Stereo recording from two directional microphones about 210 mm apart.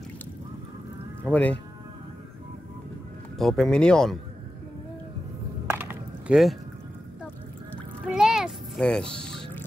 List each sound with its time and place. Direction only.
1.3 s speech: 5° left (ahead or behind)
3.3 s speech: centre (ahead or behind)
5.7 s a sound: 10° right (ahead or behind)
8.1 s music: centre (ahead or behind)